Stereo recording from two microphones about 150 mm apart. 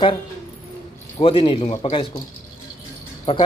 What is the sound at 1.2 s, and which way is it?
Speech, 35° left (ahead or behind).